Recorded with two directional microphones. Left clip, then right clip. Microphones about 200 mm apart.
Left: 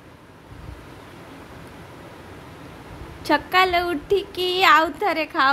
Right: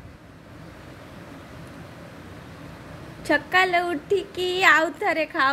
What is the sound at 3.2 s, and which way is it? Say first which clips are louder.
Speech: left 2 dB; 10° left (ahead or behind).